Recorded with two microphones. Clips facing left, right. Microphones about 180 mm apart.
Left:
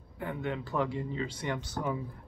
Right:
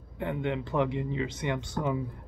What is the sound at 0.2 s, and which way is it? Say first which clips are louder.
Speech: right 4 dB; 25° right (ahead or behind).